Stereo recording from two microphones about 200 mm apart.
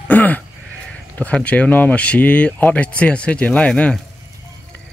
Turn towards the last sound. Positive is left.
turn(degrees=5)  # may be behind; listen again after turning